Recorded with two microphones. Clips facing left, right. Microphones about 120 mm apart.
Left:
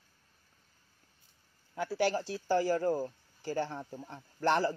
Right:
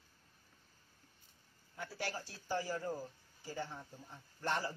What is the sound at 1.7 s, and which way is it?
Speech, 90° left.